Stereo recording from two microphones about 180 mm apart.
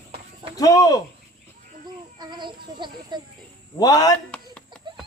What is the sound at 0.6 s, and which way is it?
Speech, 20° left (ahead or behind).